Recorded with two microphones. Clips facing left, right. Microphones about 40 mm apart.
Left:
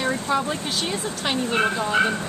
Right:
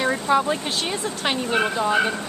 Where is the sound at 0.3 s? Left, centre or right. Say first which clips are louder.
Right 3 dB; centre.